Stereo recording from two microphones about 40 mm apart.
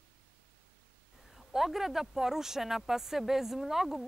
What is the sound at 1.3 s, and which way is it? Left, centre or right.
Speech, centre.